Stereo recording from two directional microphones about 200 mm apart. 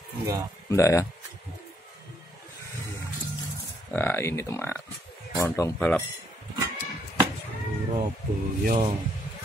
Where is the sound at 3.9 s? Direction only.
10° left (ahead or behind).